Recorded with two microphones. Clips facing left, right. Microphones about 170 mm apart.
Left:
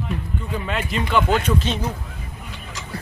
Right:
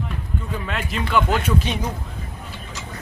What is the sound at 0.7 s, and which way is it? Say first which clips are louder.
Speech: left 1 dB; centre (ahead or behind).